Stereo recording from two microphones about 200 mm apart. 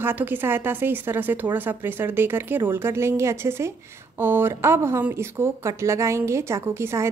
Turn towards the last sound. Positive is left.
turn(degrees=-15)  # may be behind; listen again after turning